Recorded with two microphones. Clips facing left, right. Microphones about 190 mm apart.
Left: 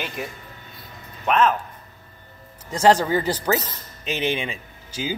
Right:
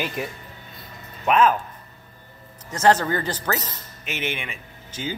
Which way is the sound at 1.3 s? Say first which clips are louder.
Right 1 dB; 5° right (ahead or behind).